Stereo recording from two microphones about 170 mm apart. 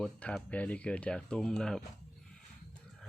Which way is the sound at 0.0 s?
5° left (ahead or behind).